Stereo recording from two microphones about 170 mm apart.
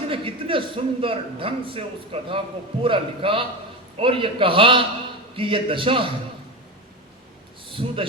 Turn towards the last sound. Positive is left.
turn(degrees=-35)  # may be behind; listen again after turning